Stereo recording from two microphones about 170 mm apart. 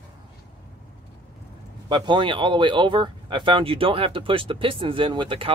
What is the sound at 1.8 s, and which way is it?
Speech, 25° right (ahead or behind).